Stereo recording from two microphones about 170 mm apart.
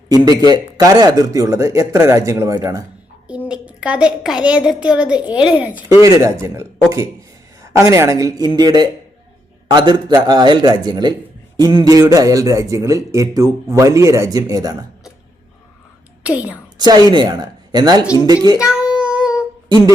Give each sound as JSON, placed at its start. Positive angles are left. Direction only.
{"t": 0.4, "sound": "speech", "side_deg": -25}
{"t": 3.2, "sound": "a woman's voice", "side_deg": -5}
{"t": 16.2, "sound": "a woman's voice", "side_deg": -10}
{"t": 16.7, "sound": "a woman's voice", "side_deg": -25}
{"t": 18.7, "sound": "child singing", "side_deg": -5}